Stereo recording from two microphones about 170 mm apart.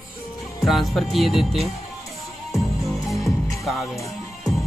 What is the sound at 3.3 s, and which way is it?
Music, 20° left (ahead or behind).